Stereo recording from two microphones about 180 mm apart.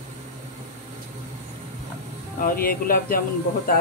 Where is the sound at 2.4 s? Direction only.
50° left (ahead or behind).